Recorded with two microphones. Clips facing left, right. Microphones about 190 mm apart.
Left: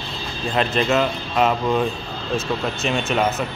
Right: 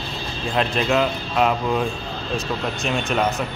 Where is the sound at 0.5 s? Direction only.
Centre (ahead or behind).